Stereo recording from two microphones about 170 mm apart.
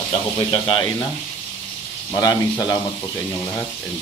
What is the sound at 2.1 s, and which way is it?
Speech, 20° left (ahead or behind).